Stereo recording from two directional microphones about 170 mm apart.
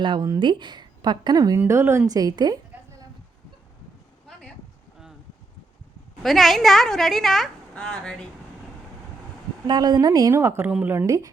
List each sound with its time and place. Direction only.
0.0 s speech: 25° right (ahead or behind)
6.2 s a woman's voice: centre (ahead or behind)
9.6 s speech: 25° right (ahead or behind)